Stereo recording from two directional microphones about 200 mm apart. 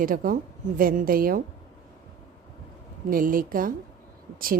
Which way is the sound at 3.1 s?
45° right (ahead or behind).